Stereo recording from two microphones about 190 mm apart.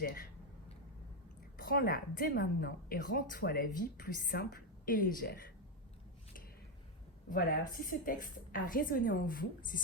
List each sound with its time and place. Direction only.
0.0 s a woman's voice: 50° left (ahead or behind)
1.5 s a woman's voice: 50° left (ahead or behind)
7.3 s a woman's voice: 45° left (ahead or behind)